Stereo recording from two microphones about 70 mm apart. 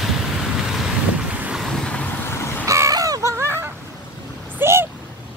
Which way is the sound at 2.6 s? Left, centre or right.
Right.